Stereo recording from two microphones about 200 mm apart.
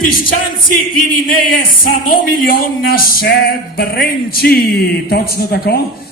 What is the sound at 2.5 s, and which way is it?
Speech, 45° left (ahead or behind).